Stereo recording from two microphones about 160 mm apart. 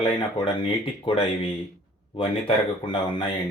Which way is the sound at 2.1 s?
35° left (ahead or behind).